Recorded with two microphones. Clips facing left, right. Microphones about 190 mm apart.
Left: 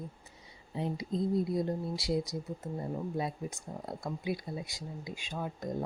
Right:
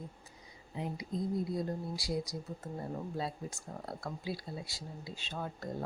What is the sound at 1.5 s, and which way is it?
Speech, 20° left (ahead or behind).